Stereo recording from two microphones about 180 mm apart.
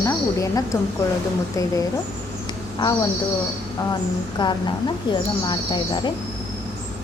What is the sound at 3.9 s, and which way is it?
Speech, 25° left (ahead or behind).